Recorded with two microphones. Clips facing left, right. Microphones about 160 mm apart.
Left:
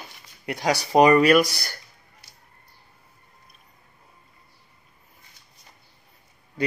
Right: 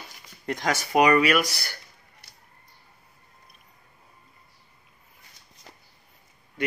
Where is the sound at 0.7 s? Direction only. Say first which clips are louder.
Left 4 dB; 35° left (ahead or behind).